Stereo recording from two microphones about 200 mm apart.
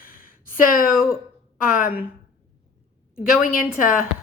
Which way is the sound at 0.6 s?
45° left (ahead or behind).